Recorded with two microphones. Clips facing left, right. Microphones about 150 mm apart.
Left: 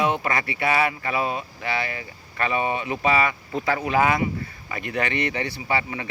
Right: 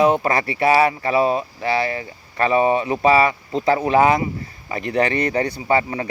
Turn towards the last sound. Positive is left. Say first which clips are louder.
# right 7 dB
turn(degrees=-40)  # may be behind; listen again after turning